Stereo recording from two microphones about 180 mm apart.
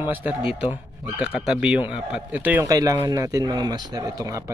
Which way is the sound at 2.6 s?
20° right (ahead or behind).